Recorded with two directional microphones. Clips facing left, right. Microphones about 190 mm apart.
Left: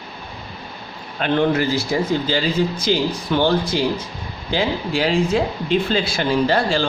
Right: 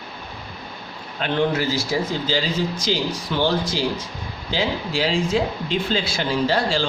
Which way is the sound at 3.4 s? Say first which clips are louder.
Left 1 dB; 55° left (ahead or behind).